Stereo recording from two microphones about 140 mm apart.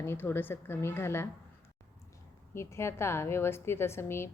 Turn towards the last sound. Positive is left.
turn(degrees=20)  # may be behind; listen again after turning